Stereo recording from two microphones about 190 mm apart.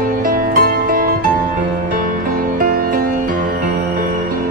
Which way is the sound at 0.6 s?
50° right (ahead or behind).